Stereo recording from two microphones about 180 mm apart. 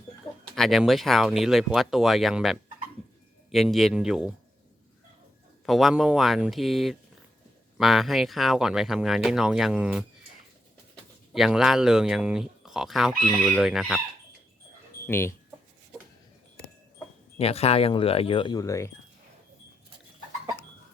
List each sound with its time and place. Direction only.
0.5 s speech: centre (ahead or behind)
5.6 s speech: centre (ahead or behind)
11.3 s speech: centre (ahead or behind)
15.0 s speech: 15° left (ahead or behind)
17.3 s speech: 35° left (ahead or behind); by 18.9 s 15° left (ahead or behind)